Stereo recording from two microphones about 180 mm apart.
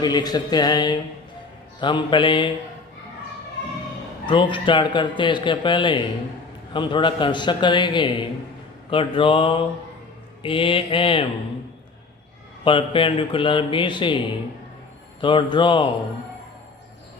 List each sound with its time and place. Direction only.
0.0 s speech: 25° left (ahead or behind)
4.3 s speech: 25° left (ahead or behind)
12.6 s speech: 30° left (ahead or behind)
15.2 s speech: 25° left (ahead or behind)